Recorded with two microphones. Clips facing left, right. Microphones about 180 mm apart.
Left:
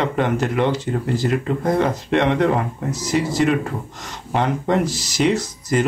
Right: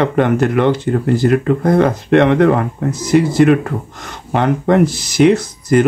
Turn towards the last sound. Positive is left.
turn(degrees=-55)  # may be behind; listen again after turning